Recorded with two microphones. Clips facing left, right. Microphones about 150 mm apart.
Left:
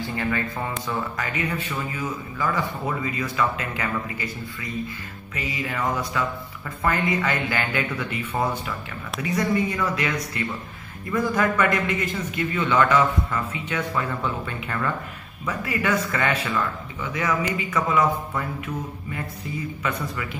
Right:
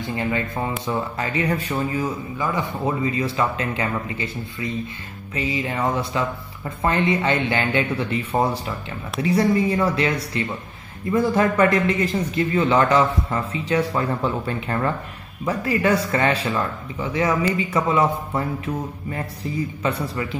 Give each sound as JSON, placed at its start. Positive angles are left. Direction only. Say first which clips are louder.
{"t": 0.0, "sound": "a man's voice", "louder": "right 2 dB", "side_deg": -20}
{"t": 2.3, "sound": "a man's voice", "louder": "right 1 dB", "side_deg": -20}